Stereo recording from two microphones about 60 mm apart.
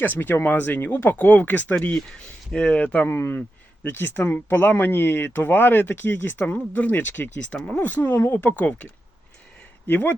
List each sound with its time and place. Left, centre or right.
0.0 s speech: left
1.9 s speech: centre
3.1 s speech: left
6.4 s speech: left
8.4 s speech: left